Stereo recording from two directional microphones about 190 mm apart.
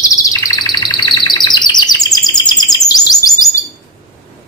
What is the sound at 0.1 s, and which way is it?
Chirp, 20° left (ahead or behind).